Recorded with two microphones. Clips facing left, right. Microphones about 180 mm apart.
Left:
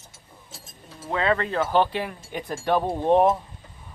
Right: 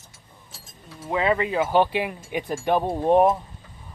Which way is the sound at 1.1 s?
10° right (ahead or behind).